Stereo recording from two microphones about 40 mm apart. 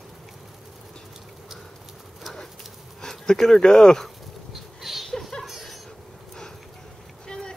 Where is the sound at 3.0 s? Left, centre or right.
Centre.